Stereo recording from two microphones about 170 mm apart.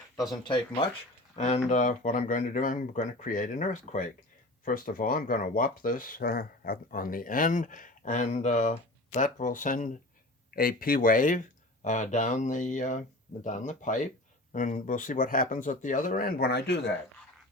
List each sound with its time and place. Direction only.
0.4 s speech: 30° left (ahead or behind)
1.4 s speech: 45° left (ahead or behind); by 16.9 s 85° left